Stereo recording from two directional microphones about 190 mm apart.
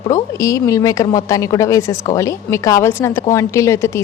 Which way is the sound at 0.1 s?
15° left (ahead or behind).